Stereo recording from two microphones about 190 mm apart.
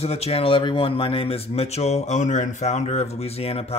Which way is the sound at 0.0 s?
30° left (ahead or behind).